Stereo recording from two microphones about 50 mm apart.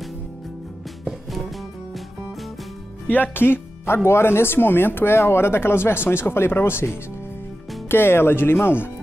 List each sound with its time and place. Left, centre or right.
3.1 s speech: left